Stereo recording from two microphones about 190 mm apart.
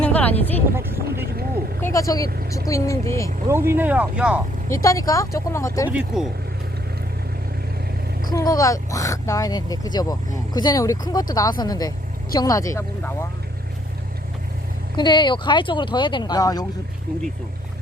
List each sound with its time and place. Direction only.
0.0 s a sound: 10° left (ahead or behind)
0.8 s vehicle: 10° right (ahead or behind)
1.8 s speech: 15° left (ahead or behind)
3.5 s speech: 10° right (ahead or behind)
4.7 s speech: 15° left (ahead or behind)
5.9 s speech: 5° right (ahead or behind)
8.2 s speech: 20° left (ahead or behind)
14.9 s speech: 25° left (ahead or behind)